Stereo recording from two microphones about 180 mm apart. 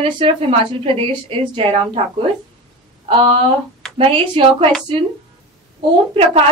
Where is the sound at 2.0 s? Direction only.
30° right (ahead or behind).